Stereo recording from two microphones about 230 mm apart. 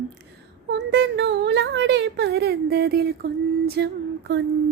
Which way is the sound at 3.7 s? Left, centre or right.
Right.